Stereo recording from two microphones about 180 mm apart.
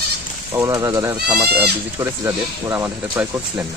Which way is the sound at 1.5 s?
65° right (ahead or behind).